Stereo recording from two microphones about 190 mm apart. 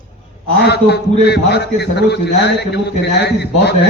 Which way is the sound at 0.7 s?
60° left (ahead or behind).